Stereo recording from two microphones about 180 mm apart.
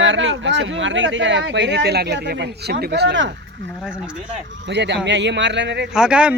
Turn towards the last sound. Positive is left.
turn(degrees=-5)  # may be behind; listen again after turning